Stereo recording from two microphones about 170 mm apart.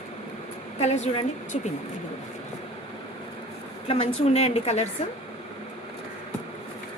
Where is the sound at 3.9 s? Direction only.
35° left (ahead or behind).